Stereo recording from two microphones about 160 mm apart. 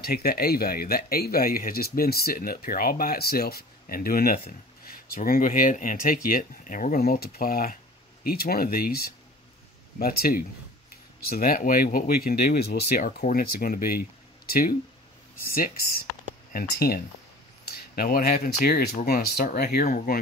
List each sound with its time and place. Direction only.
0.0 s speech: 80° left
13.3 s speech: 65° left (ahead or behind)